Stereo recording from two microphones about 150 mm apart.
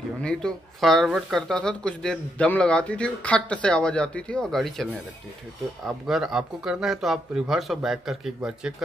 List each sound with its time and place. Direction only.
0.2 s speech: 5° left (ahead or behind)
5.9 s speech: centre (ahead or behind)